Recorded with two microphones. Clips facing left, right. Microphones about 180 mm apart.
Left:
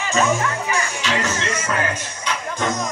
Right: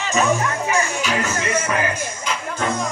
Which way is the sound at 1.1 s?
Centre (ahead or behind).